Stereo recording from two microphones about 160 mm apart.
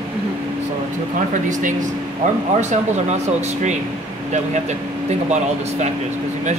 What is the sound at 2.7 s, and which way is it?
Speech, 45° right (ahead or behind).